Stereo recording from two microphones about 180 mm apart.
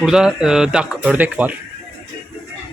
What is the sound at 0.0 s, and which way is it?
A man's voice, 5° right (ahead or behind).